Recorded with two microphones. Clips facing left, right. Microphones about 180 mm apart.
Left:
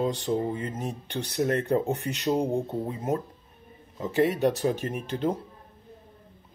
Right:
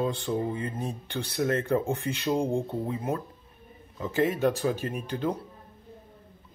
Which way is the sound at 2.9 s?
40° left (ahead or behind).